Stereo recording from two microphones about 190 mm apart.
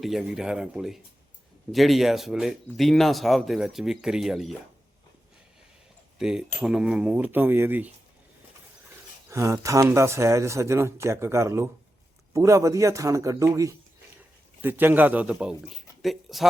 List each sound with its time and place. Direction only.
0.0 s speech: centre (ahead or behind)
6.1 s speech: 5° right (ahead or behind)
9.3 s speech: 15° right (ahead or behind); by 16.5 s centre (ahead or behind)